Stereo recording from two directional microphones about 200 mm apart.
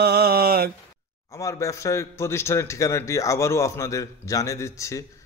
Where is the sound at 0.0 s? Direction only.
50° right (ahead or behind).